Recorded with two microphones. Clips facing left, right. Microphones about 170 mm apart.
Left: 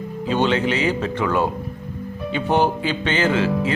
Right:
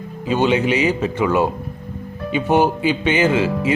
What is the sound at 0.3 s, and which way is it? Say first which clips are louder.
A man's voice: right 3 dB; 10° right (ahead or behind).